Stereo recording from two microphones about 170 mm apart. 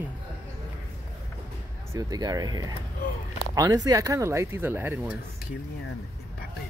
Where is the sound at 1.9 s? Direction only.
20° right (ahead or behind).